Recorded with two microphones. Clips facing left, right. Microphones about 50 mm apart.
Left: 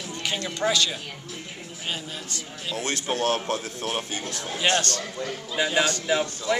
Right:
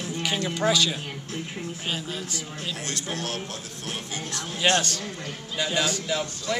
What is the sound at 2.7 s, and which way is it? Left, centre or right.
A man's voice, left.